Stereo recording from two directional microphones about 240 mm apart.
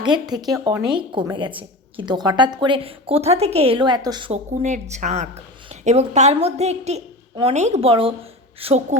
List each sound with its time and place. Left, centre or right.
0.0 s a woman's voice: centre